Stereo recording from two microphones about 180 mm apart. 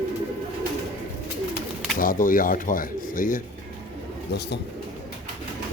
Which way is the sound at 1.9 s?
50° left (ahead or behind).